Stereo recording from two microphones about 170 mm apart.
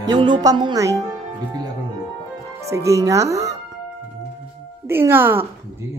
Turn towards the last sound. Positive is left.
turn(degrees=-15)  # may be behind; listen again after turning